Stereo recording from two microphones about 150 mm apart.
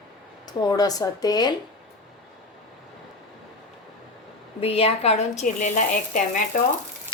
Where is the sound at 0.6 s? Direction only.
25° left (ahead or behind).